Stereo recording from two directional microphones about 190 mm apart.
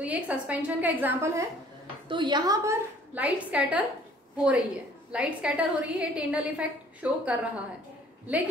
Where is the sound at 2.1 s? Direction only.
25° right (ahead or behind); by 3.8 s 5° right (ahead or behind).